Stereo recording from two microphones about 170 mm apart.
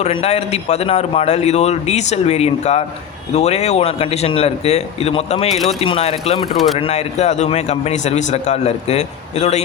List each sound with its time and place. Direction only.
0.0 s a man's voice: 35° left (ahead or behind)